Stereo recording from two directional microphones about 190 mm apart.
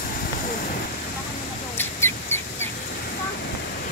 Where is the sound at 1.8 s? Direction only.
10° left (ahead or behind).